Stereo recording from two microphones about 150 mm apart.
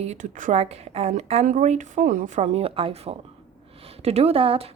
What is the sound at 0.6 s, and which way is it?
A woman's voice, 45° right (ahead or behind).